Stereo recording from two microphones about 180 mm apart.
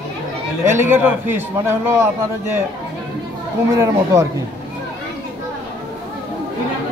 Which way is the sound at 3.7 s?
15° right (ahead or behind).